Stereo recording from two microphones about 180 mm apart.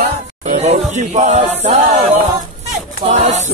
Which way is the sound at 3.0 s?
40° right (ahead or behind).